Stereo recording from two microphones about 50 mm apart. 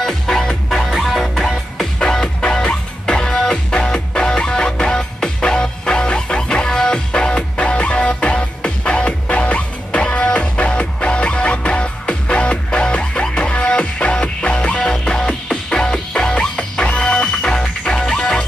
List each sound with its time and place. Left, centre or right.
0.0 s music: centre